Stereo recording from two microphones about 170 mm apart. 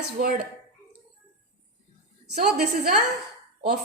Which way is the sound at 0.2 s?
45° right (ahead or behind).